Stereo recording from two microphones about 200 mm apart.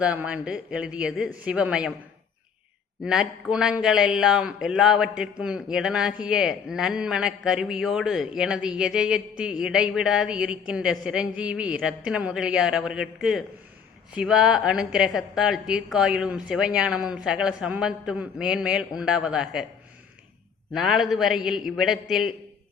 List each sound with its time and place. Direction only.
0.0 s a man's voice: 5° right (ahead or behind)
3.0 s a man's voice: 5° right (ahead or behind)
20.7 s a man's voice: centre (ahead or behind)